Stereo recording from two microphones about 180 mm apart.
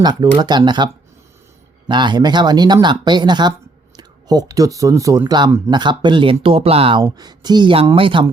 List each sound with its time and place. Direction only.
0.0 s speech: 25° right (ahead or behind)
1.9 s speech: 25° right (ahead or behind)